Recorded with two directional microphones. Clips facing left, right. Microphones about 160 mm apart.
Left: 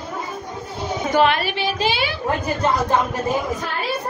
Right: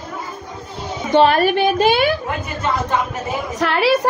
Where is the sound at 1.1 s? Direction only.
40° right (ahead or behind).